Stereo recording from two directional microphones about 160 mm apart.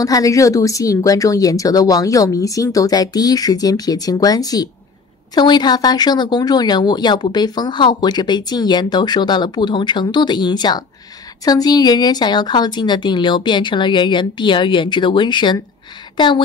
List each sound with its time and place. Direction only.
0.0 s speech: 20° left (ahead or behind)